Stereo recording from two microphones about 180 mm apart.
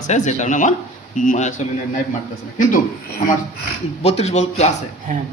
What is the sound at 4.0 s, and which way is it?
Speech, 35° left (ahead or behind).